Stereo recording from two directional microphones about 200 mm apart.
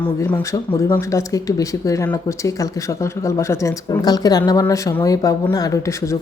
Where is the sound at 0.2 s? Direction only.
10° left (ahead or behind).